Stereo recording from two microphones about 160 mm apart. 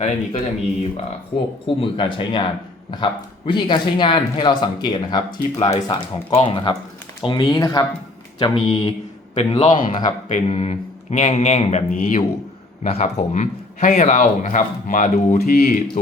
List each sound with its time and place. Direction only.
0.0 s speech: 40° left (ahead or behind)
15.4 s speech: 80° left